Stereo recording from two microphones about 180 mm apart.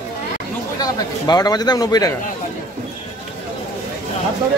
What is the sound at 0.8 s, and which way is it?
Speech, 20° left (ahead or behind).